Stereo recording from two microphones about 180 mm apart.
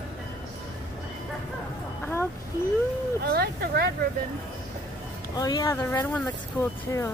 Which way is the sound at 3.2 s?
60° right (ahead or behind).